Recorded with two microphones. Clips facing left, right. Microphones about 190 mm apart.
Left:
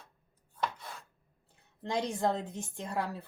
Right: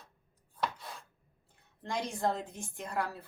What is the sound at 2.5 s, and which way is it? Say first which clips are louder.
Speech: left 1 dB; 25° left (ahead or behind).